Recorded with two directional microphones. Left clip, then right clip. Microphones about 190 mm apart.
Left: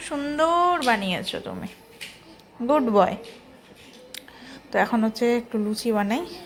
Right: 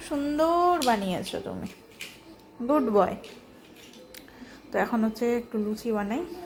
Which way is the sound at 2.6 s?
Centre (ahead or behind).